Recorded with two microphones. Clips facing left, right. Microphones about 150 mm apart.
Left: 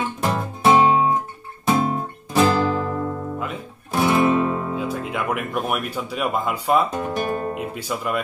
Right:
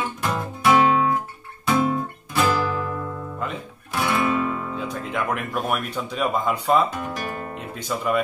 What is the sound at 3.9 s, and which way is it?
Music, 25° left (ahead or behind).